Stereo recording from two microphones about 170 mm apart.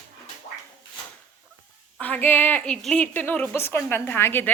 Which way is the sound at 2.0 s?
10° left (ahead or behind).